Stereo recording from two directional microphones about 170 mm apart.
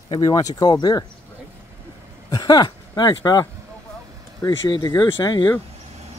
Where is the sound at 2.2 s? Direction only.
20° left (ahead or behind).